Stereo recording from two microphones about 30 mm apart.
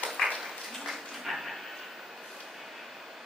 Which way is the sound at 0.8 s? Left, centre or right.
Centre.